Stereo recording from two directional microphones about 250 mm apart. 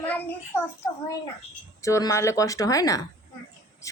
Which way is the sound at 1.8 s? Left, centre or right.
Centre.